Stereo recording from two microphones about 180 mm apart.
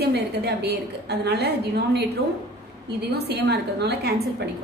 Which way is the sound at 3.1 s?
65° right (ahead or behind).